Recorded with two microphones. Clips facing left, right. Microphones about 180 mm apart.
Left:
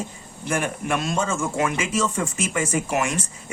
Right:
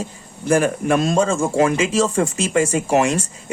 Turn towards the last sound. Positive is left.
turn(degrees=-30)  # may be behind; listen again after turning